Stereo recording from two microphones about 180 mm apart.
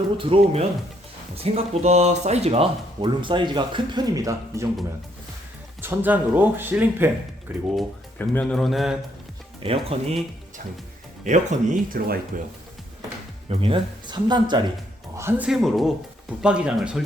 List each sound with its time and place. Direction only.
0.2 s speech: 35° right (ahead or behind); by 4.7 s 15° right (ahead or behind)
5.8 s speech: 10° right (ahead or behind)
8.2 s speech: 5° left (ahead or behind)
9.6 s speech: 35° right (ahead or behind)
11.2 s speech: 45° right (ahead or behind)
13.5 s speech: 30° right (ahead or behind)
15.2 s speech: 15° right (ahead or behind)
15.4 s speech: centre (ahead or behind)